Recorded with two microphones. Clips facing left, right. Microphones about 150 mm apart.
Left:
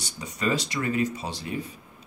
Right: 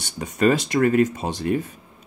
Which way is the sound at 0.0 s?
50° right (ahead or behind).